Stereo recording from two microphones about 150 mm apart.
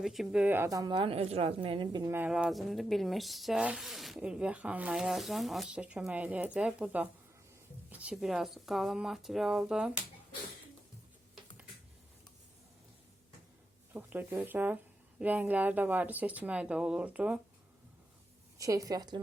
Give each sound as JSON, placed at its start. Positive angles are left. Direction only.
{"t": 0.0, "sound": "a woman's voice", "side_deg": 0}
{"t": 2.1, "sound": "speech", "side_deg": -10}
{"t": 13.9, "sound": "speech", "side_deg": -10}
{"t": 18.6, "sound": "a woman's voice", "side_deg": -20}